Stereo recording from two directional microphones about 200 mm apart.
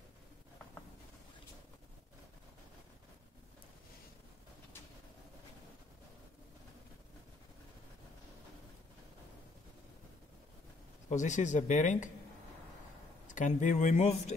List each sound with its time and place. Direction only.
11.1 s speech: 35° left (ahead or behind)
13.3 s speech: 40° left (ahead or behind)